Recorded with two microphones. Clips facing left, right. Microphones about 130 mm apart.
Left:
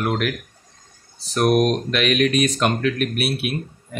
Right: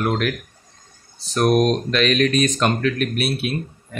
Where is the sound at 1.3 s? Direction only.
10° left (ahead or behind).